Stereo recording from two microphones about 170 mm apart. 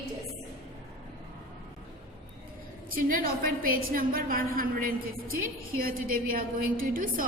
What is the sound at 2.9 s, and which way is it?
A woman's voice, 55° right (ahead or behind).